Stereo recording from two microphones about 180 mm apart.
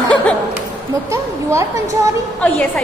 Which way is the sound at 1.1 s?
15° right (ahead or behind).